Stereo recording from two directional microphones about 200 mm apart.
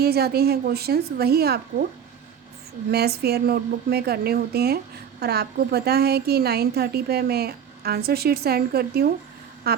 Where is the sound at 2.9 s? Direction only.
50° right (ahead or behind).